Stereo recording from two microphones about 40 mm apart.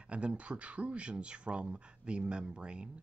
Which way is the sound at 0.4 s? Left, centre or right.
Right.